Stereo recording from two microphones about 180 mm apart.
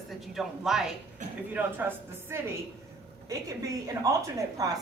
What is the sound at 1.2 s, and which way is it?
Speech, 45° right (ahead or behind).